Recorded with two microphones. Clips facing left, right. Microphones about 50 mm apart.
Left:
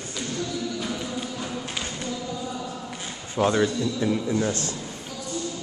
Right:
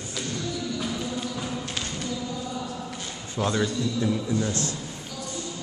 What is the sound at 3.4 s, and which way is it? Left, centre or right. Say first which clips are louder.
A man's voice: left 4 dB; left.